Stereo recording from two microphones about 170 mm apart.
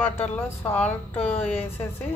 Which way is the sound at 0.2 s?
10° left (ahead or behind).